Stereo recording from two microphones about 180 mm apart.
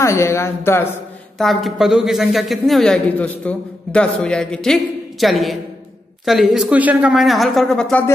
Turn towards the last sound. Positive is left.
turn(degrees=5)  # may be behind; listen again after turning